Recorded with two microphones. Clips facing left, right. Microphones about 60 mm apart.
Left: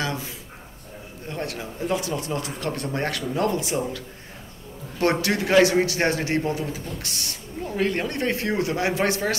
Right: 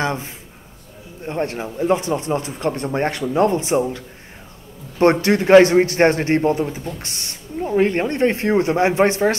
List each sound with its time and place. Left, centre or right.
0.0 s a sound: right
1.2 s speech: right
5.2 s a man's voice: right